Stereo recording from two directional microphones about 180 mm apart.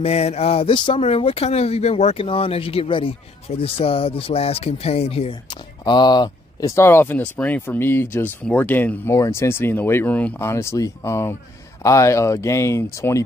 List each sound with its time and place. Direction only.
0.0 s speech: 35° left (ahead or behind); by 13.2 s 15° left (ahead or behind)